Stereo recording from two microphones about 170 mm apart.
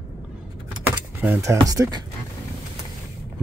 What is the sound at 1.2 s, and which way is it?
Speech, 15° right (ahead or behind).